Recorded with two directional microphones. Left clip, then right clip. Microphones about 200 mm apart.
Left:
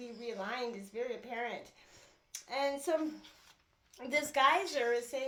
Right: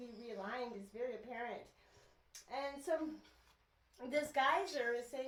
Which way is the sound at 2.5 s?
40° left (ahead or behind).